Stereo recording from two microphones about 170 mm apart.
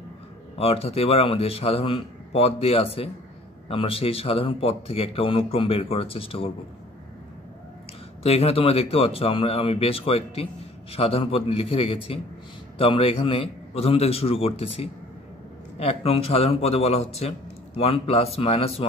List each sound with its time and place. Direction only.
0.6 s speech: 35° left (ahead or behind)
8.2 s speech: 35° left (ahead or behind)